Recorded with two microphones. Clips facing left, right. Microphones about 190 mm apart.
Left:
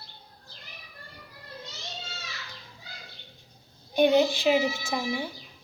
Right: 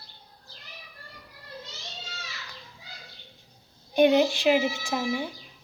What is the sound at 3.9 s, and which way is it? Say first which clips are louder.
A child's voice: right 1 dB; centre (ahead or behind).